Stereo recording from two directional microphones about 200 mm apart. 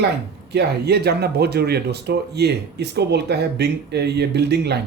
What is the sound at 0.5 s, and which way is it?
Speech, 55° right (ahead or behind).